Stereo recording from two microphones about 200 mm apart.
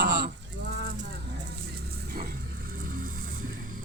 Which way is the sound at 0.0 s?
45° right (ahead or behind).